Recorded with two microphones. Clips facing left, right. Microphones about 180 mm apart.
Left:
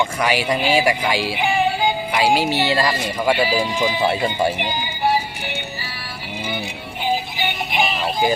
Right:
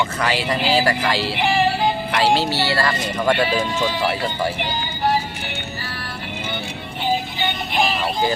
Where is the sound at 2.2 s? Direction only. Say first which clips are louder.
Left 1 dB; 10° left (ahead or behind).